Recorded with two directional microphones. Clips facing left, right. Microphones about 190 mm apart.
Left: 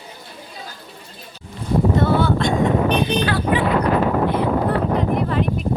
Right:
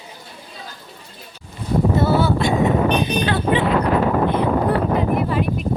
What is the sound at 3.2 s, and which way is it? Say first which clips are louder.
Vehicle: right 1 dB; 25° right (ahead or behind).